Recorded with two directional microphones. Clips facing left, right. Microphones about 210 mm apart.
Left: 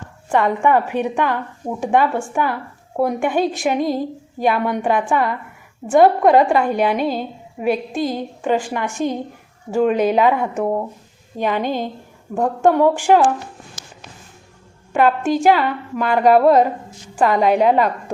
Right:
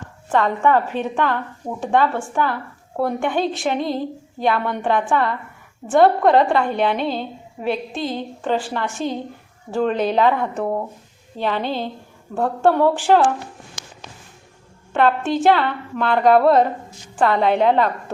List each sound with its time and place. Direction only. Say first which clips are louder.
0.3 s a woman's voice: left 1 dB; 15° left (ahead or behind)
5.9 s a sound: left 2 dB; 5° left (ahead or behind)
8.1 s a woman's voice: left 2 dB; 10° left (ahead or behind)
14.9 s a woman's voice: left 2 dB; 10° left (ahead or behind)